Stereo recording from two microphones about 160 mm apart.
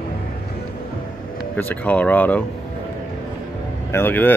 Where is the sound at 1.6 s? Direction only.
10° left (ahead or behind).